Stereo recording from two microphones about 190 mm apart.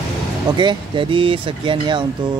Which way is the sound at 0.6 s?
25° right (ahead or behind).